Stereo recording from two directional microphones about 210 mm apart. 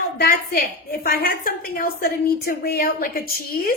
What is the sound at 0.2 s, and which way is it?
A woman's voice, 45° left (ahead or behind).